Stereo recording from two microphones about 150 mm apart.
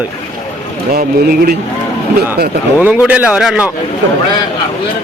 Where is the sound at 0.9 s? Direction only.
90° right.